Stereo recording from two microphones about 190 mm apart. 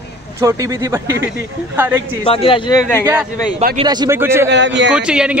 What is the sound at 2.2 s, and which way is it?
Speech, 30° left (ahead or behind).